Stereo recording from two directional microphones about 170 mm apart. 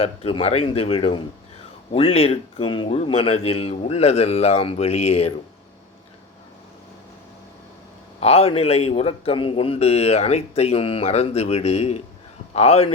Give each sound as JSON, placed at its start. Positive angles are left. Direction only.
{"t": 0.0, "sound": "a man's voice", "side_deg": 35}
{"t": 8.2, "sound": "a man's voice", "side_deg": 35}